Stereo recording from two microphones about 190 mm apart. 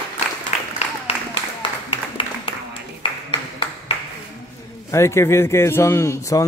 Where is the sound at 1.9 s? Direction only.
30° left (ahead or behind).